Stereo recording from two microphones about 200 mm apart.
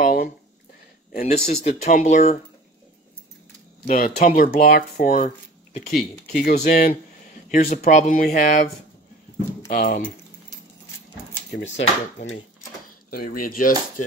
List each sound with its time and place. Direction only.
0.0 s a sound: 45° left (ahead or behind)
1.2 s speech: 35° left (ahead or behind)
3.8 s cutlery: 40° left (ahead or behind)
5.2 s a sound: 35° left (ahead or behind)
6.3 s cutlery: 40° left (ahead or behind)
7.5 s speech: 35° left (ahead or behind)
9.7 s cutlery: 40° left (ahead or behind)
11.5 s speech: 65° left (ahead or behind)
13.1 s cutlery: 45° left (ahead or behind)